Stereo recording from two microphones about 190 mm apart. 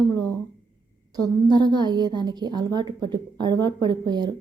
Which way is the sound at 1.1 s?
20° right (ahead or behind).